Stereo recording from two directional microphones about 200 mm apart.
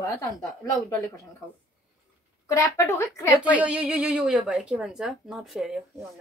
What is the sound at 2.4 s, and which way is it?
Speech, 15° left (ahead or behind).